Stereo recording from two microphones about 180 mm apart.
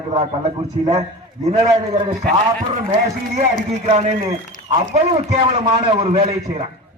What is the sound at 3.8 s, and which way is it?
A man's voice, 35° right (ahead or behind).